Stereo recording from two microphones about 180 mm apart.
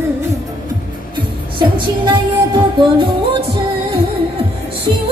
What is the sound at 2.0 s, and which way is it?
Music, 25° right (ahead or behind).